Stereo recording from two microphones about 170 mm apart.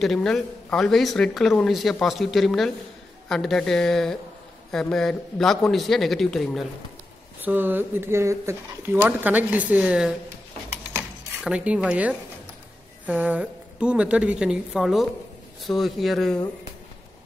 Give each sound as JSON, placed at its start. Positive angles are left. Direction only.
{"t": 0.0, "sound": "speech", "side_deg": 0}
{"t": 7.4, "sound": "speech", "side_deg": -10}
{"t": 10.9, "sound": "a sound", "side_deg": -10}
{"t": 13.0, "sound": "speech", "side_deg": -10}